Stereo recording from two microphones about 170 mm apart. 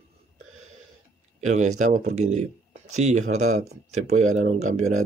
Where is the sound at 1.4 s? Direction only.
45° right (ahead or behind).